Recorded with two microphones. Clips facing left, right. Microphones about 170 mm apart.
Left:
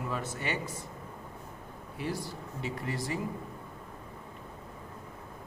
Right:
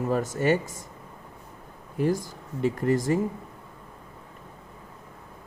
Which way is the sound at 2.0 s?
45° right (ahead or behind).